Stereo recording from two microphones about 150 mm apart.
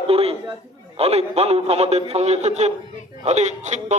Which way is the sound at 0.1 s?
40° right (ahead or behind).